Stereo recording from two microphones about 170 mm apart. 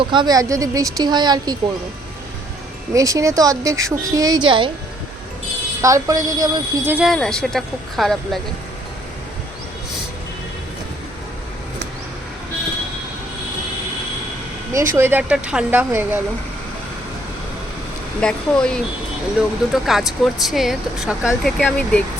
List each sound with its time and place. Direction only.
0.0 s speech: 30° right (ahead or behind)
2.9 s speech: 20° right (ahead or behind)
5.8 s speech: 20° right (ahead or behind)
6.9 s speech: centre (ahead or behind)
14.7 s speech: 15° right (ahead or behind)
18.2 s speech: 5° left (ahead or behind)